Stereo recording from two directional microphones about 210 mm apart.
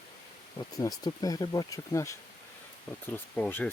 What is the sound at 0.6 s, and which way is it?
Speech, 20° left (ahead or behind).